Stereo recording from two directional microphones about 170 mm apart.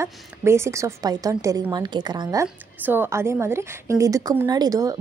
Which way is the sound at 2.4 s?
10° right (ahead or behind).